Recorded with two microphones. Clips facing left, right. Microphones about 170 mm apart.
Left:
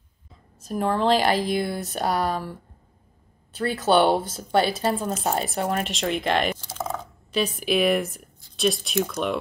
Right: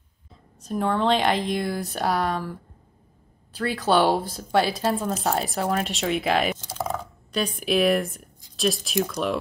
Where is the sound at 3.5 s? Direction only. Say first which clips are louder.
Left 1 dB; centre (ahead or behind).